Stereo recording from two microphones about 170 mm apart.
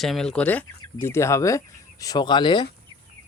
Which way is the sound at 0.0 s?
Centre (ahead or behind).